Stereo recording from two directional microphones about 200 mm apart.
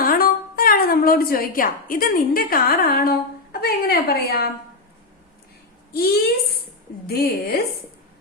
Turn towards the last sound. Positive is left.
turn(degrees=50)  # may be behind; listen again after turning